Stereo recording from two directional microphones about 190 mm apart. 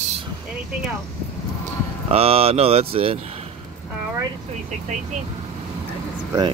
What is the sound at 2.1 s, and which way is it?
Speech, 30° right (ahead or behind).